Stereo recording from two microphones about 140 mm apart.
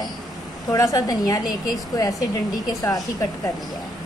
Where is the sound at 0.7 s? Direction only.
25° left (ahead or behind).